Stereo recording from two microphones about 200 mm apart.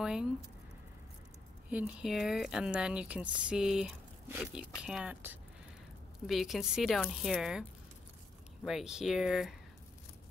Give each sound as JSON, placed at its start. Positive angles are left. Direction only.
{"t": 0.0, "sound": "speech", "side_deg": -5}
{"t": 1.7, "sound": "speech", "side_deg": -5}
{"t": 8.6, "sound": "speech", "side_deg": 0}